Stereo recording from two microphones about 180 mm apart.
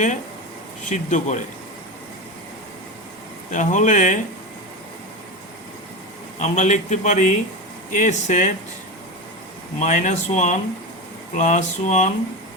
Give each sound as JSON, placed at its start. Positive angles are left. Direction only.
{"t": 0.9, "sound": "speech", "side_deg": 40}
{"t": 3.5, "sound": "speech", "side_deg": 45}
{"t": 6.4, "sound": "a man's voice", "side_deg": 40}
{"t": 9.8, "sound": "a man's voice", "side_deg": 45}